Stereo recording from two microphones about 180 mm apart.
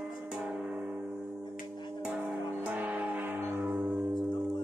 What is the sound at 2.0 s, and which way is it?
Music, 10° right (ahead or behind).